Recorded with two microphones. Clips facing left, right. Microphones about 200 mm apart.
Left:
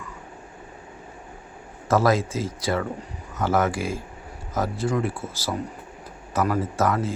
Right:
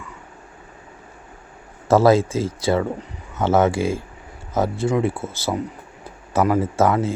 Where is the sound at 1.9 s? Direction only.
25° right (ahead or behind).